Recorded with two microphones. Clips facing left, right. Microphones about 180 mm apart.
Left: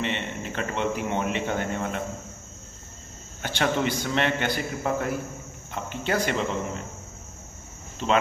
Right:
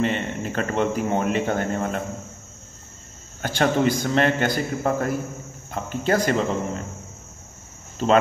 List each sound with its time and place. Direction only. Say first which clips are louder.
0.0 s speech: right 6 dB; 40° right (ahead or behind)
3.4 s speech: right 5 dB; 40° right (ahead or behind)
8.0 s speech: right 5 dB; 40° right (ahead or behind)